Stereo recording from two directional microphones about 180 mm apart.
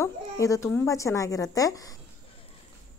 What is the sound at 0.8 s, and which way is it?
Speech, 15° left (ahead or behind).